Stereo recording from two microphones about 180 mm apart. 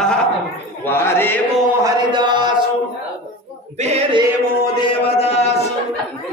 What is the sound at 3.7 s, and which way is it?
Male singing, 35° right (ahead or behind).